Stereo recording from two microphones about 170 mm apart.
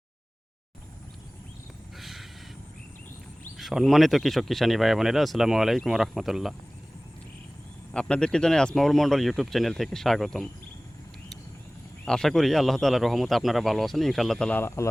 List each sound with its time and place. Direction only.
2.0 s a sound: centre (ahead or behind)
3.6 s speech: centre (ahead or behind)
7.9 s speech: 5° left (ahead or behind)
12.0 s speech: 5° left (ahead or behind)